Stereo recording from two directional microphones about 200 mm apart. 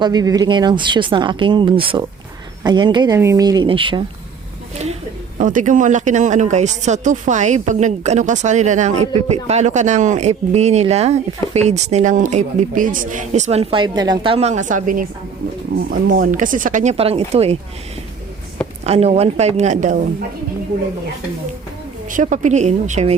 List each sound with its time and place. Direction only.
0.0 s speech: 20° right (ahead or behind)
5.4 s speech: 40° right (ahead or behind)
18.9 s speech: 30° right (ahead or behind)
22.1 s speech: 40° right (ahead or behind)